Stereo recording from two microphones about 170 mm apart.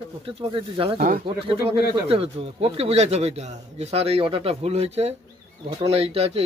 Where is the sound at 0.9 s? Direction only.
50° right (ahead or behind).